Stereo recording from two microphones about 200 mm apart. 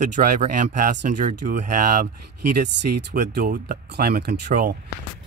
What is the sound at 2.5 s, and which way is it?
Speech, 55° right (ahead or behind).